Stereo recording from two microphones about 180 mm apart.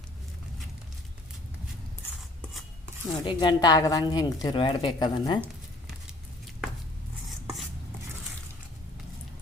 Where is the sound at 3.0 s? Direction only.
25° left (ahead or behind).